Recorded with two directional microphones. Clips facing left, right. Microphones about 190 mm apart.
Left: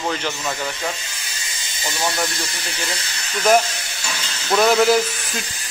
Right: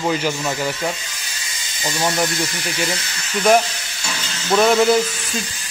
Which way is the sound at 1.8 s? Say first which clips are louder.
Right 3 dB; 20° right (ahead or behind).